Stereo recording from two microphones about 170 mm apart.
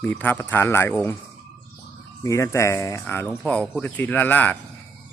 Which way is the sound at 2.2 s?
15° left (ahead or behind).